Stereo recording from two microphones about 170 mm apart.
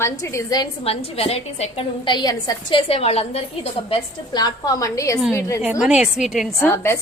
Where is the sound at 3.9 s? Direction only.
25° left (ahead or behind).